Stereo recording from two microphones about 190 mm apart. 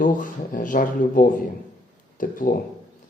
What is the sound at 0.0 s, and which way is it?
Speech, 45° left (ahead or behind).